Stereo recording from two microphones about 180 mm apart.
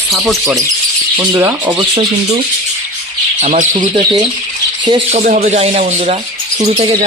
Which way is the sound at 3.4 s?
45° right (ahead or behind).